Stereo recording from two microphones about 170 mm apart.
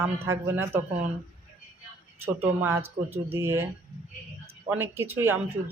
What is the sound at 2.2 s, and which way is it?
Speech, 10° right (ahead or behind).